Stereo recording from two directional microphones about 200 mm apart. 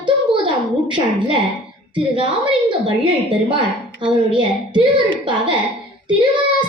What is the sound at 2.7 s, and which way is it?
A child's voice, 25° right (ahead or behind).